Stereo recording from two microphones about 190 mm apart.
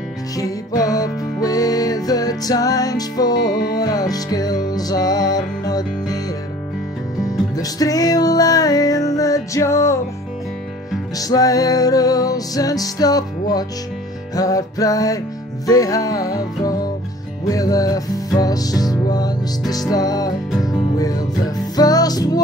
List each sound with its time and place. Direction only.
0.4 s music: 20° left (ahead or behind)
7.2 s music: 20° left (ahead or behind)
11.1 s music: 20° left (ahead or behind)
21.7 s music: 20° left (ahead or behind)